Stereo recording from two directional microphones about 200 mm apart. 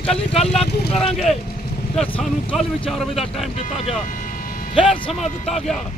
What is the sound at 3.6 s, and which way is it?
Speech, 30° left (ahead or behind).